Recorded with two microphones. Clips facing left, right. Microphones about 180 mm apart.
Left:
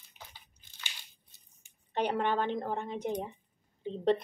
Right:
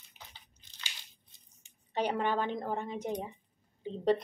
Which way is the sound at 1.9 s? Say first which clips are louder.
Left 1 dB; 5° right (ahead or behind).